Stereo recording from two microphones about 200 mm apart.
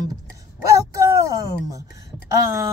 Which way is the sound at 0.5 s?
15° right (ahead or behind).